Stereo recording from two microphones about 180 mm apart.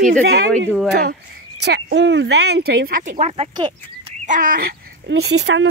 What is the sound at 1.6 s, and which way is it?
Speech, 80° right.